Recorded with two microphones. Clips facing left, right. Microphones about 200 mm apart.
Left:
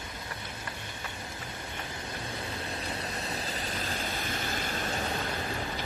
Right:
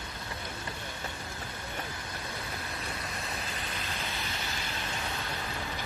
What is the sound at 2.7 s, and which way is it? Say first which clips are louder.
Vehicle: left 3 dB; 30° left (ahead or behind).